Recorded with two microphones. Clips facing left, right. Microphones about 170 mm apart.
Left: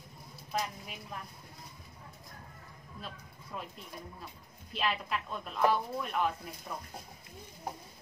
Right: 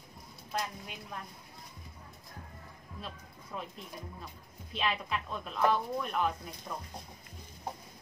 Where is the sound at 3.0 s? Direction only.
Centre (ahead or behind).